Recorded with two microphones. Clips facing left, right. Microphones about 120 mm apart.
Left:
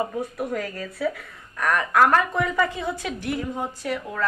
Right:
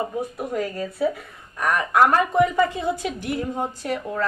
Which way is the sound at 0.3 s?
25° right (ahead or behind).